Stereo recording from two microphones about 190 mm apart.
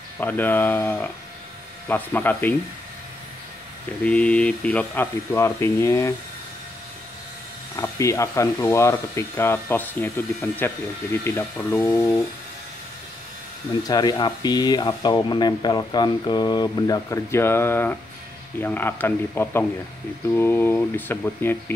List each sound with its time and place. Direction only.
0.2 s speech: 10° left (ahead or behind)
4.0 s speech: 5° left (ahead or behind)
7.7 s speech: 15° left (ahead or behind)
13.8 s speech: 20° left (ahead or behind)